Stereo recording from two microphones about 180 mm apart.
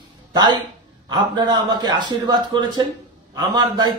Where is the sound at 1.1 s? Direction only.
25° right (ahead or behind).